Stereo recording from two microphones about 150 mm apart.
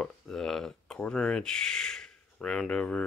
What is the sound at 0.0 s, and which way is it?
Speech, 5° left (ahead or behind).